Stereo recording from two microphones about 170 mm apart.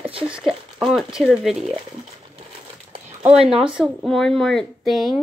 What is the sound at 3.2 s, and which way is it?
Speech, 5° right (ahead or behind).